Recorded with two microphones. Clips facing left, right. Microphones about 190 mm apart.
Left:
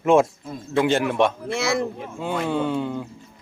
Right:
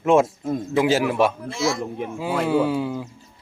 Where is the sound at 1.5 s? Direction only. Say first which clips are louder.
Left 1 dB; 65° left (ahead or behind).